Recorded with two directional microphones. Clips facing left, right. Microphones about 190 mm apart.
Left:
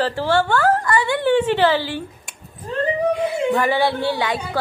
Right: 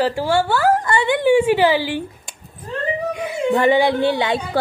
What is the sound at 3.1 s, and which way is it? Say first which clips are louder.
Speech: even; 20° right (ahead or behind).